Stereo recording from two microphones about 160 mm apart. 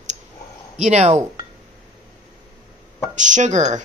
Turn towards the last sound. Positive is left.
turn(degrees=-50)  # may be behind; listen again after turning